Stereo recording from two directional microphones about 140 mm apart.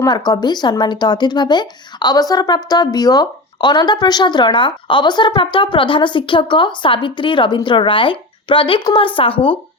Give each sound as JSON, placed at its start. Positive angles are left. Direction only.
{"t": 0.0, "sound": "speech", "side_deg": 30}